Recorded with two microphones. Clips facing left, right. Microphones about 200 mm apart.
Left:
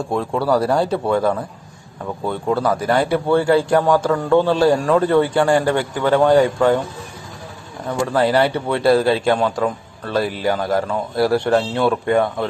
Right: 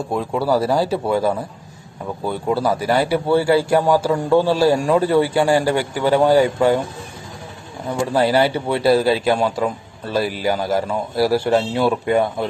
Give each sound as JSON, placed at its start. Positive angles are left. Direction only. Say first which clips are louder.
{"t": 0.1, "sound": "a man's voice", "louder": "left 1 dB", "side_deg": 0}
{"t": 8.1, "sound": "a man's voice", "louder": "even", "side_deg": -5}